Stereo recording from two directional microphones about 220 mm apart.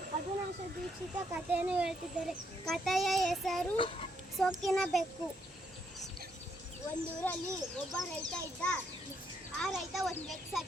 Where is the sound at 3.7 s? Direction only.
25° left (ahead or behind).